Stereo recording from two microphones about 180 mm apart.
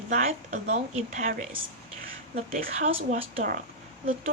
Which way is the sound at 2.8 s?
35° right (ahead or behind).